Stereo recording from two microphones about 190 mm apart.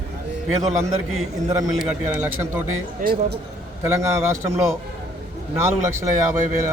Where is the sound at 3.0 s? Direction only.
55° right (ahead or behind).